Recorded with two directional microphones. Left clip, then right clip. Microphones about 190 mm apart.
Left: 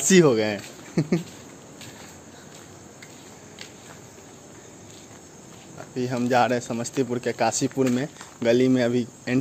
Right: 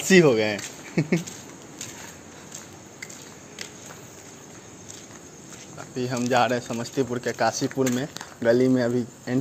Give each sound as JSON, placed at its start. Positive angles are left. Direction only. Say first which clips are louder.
{"t": 0.0, "sound": "speech", "louder": "even", "side_deg": 25}
{"t": 5.9, "sound": "speech", "louder": "left 1 dB", "side_deg": 30}
{"t": 8.4, "sound": "speech", "louder": "even", "side_deg": 25}